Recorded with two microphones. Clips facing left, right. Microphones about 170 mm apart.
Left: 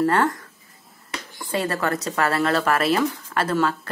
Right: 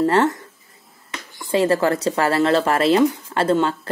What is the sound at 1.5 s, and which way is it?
A woman's voice, 30° right (ahead or behind).